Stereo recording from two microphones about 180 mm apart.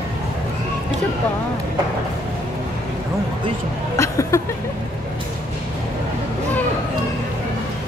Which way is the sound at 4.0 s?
15° left (ahead or behind).